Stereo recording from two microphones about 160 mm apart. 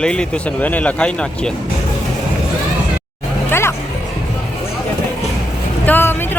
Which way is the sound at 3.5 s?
15° left (ahead or behind).